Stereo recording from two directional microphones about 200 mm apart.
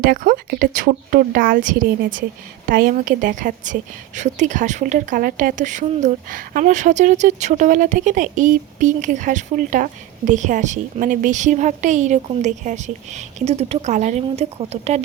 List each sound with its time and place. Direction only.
0.0 s a woman's voice: 45° right (ahead or behind)